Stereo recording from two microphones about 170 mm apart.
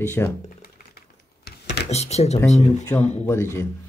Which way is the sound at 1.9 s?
40° left (ahead or behind).